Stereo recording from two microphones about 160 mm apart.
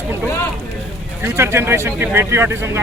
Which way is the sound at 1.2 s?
15° right (ahead or behind).